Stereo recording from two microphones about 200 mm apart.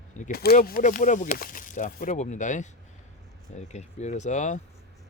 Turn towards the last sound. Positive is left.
turn(degrees=40)  # may be behind; listen again after turning